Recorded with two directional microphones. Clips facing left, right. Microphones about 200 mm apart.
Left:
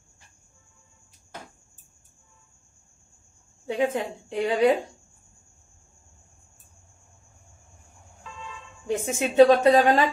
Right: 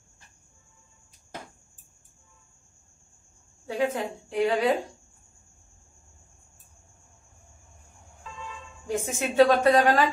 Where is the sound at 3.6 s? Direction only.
20° left (ahead or behind).